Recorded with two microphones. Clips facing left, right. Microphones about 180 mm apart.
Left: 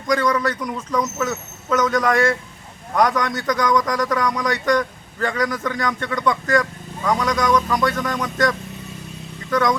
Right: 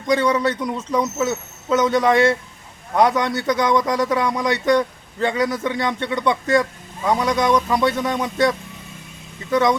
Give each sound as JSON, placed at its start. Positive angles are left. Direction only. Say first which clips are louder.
{"t": 0.1, "sound": "a man's voice", "louder": "right 2 dB", "side_deg": -25}